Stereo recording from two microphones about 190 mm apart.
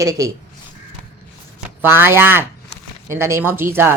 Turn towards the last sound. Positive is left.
turn(degrees=-10)  # may be behind; listen again after turning